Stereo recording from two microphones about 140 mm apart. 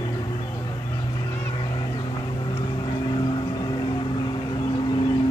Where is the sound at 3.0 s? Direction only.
30° left (ahead or behind).